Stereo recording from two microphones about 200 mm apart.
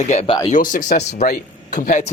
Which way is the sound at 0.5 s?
40° left (ahead or behind).